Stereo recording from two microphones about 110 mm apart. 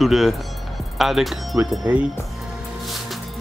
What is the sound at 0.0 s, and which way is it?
Speech, centre (ahead or behind).